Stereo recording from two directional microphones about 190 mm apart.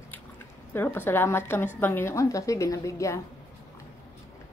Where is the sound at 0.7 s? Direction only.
10° left (ahead or behind).